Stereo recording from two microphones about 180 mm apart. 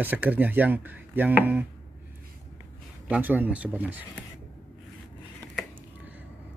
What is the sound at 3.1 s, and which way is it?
Speech, 10° right (ahead or behind).